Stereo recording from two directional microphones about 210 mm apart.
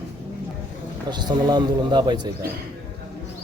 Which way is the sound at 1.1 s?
20° right (ahead or behind).